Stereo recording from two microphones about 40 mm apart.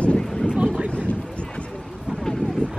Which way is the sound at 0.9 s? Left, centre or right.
Left.